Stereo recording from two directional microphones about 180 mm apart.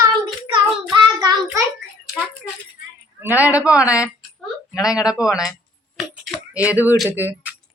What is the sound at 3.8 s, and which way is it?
Speech, 15° left (ahead or behind).